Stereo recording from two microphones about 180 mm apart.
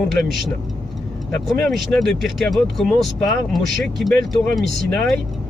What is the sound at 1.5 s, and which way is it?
Speech, centre (ahead or behind).